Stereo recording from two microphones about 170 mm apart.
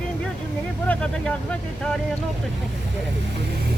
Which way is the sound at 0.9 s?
5° left (ahead or behind).